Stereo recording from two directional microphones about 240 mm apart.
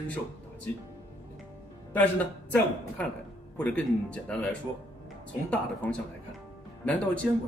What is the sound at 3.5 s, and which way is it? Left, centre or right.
Speech, centre.